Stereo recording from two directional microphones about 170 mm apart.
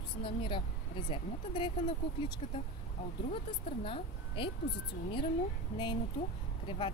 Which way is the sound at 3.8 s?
30° left (ahead or behind).